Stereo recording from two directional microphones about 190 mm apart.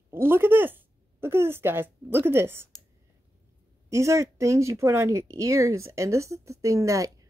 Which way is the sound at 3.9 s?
15° right (ahead or behind).